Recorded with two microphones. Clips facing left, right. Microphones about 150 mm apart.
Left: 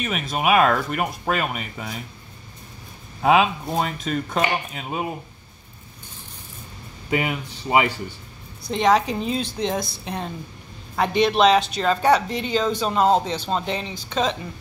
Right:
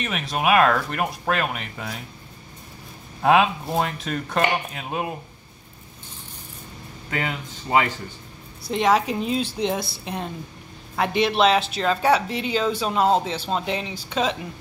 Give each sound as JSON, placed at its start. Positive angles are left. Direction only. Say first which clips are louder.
{"t": 0.0, "sound": "speech", "louder": "left 1 dB", "side_deg": 0}
{"t": 3.2, "sound": "speech", "louder": "even", "side_deg": 0}
{"t": 7.1, "sound": "speech", "louder": "left 4 dB", "side_deg": 15}
{"t": 8.6, "sound": "speech", "louder": "left 1 dB", "side_deg": -5}